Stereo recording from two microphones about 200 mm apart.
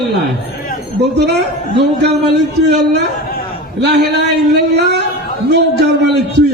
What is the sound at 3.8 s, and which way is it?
A man's voice, 60° right (ahead or behind).